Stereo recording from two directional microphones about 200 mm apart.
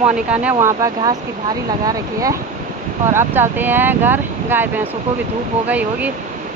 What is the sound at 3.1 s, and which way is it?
Speech, 10° right (ahead or behind).